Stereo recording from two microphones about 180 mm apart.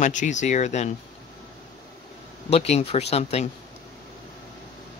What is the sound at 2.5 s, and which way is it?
Speech, 35° left (ahead or behind).